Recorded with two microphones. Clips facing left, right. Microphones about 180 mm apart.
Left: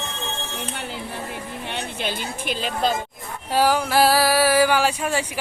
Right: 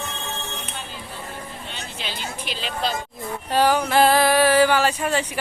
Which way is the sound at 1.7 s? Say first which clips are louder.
Left 9 dB; 60° left (ahead or behind).